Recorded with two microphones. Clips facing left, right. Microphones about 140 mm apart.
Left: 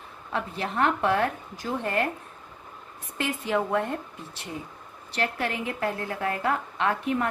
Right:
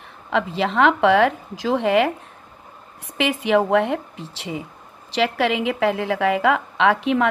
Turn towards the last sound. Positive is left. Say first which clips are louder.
# right 8 dB
turn(degrees=-90)